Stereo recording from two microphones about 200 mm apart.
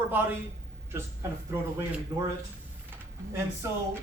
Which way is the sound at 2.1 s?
15° right (ahead or behind).